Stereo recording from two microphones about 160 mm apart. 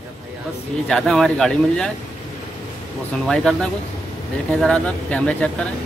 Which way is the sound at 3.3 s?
Centre (ahead or behind).